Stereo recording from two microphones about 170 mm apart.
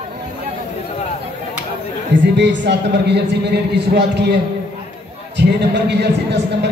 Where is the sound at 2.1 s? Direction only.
90° right.